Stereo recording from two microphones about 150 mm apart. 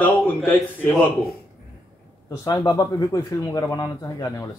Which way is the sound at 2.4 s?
25° left (ahead or behind).